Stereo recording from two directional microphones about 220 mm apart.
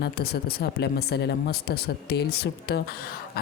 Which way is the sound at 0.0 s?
45° left (ahead or behind).